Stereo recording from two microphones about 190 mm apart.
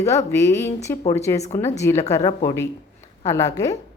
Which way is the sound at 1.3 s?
35° left (ahead or behind).